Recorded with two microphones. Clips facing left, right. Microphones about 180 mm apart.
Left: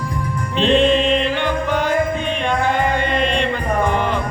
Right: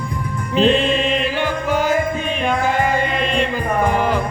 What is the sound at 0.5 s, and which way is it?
Music, 5° right (ahead or behind).